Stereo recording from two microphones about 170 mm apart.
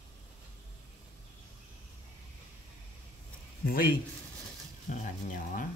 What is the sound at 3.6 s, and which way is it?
Speech, 60° left (ahead or behind).